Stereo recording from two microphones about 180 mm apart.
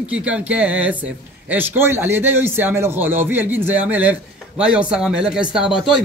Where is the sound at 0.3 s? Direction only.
5° right (ahead or behind).